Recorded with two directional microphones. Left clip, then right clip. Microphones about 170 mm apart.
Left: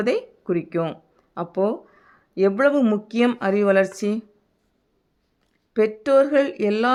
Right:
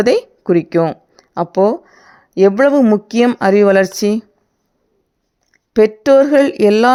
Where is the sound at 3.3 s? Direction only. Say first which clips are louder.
Right 9 dB; 50° right (ahead or behind).